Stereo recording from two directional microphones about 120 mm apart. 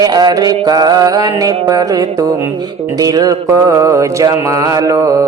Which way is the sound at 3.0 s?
30° right (ahead or behind).